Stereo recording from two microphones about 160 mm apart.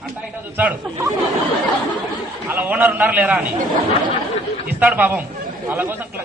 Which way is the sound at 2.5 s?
10° right (ahead or behind).